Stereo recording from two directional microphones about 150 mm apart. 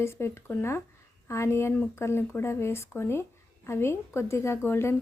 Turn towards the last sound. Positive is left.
turn(degrees=15)  # may be behind; listen again after turning